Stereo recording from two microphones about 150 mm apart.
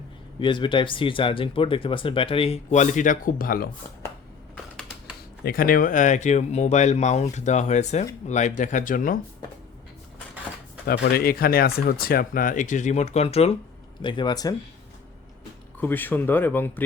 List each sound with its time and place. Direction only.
0.3 s speech: 35° left (ahead or behind); by 3.7 s 70° left (ahead or behind)
5.5 s speech: 75° left (ahead or behind)
10.8 s speech: 90° left; by 13.6 s 40° left (ahead or behind)
14.0 s speech: 30° left (ahead or behind)
15.8 s speech: 10° left (ahead or behind)